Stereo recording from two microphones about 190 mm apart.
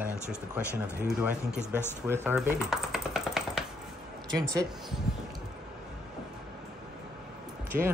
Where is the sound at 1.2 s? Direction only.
10° right (ahead or behind).